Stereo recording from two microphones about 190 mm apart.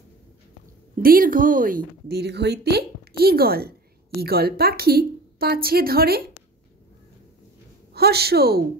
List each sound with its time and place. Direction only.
1.0 s a woman's voice: 50° right (ahead or behind)
7.9 s a woman's voice: 55° right (ahead or behind)